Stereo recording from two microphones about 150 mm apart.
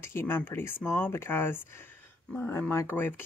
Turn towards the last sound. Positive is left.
turn(degrees=15)  # may be behind; listen again after turning